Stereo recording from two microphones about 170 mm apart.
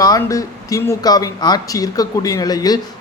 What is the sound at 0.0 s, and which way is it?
Speech, 20° left (ahead or behind).